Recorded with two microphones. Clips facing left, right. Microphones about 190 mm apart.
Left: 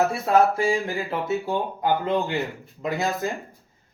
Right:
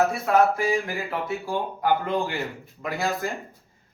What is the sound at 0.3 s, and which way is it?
Speech, 25° left (ahead or behind).